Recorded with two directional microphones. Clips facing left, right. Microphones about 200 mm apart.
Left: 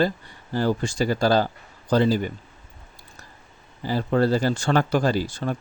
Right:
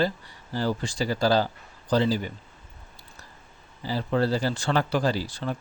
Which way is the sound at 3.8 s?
50° left (ahead or behind).